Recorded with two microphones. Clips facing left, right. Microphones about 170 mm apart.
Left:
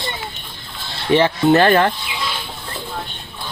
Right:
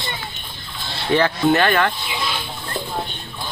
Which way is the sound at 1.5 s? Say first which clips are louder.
Left 6 dB; 35° left (ahead or behind).